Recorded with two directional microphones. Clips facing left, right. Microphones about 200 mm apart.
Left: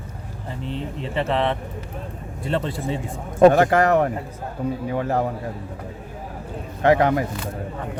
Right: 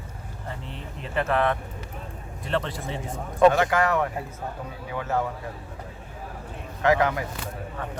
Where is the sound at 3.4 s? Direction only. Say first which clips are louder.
Left 5 dB; 40° left (ahead or behind).